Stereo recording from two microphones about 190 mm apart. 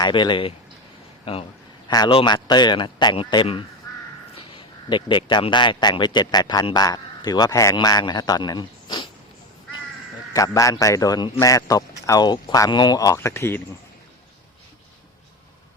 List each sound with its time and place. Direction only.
0.0 s a man's voice: 25° left (ahead or behind)
10.3 s a man's voice: 15° left (ahead or behind)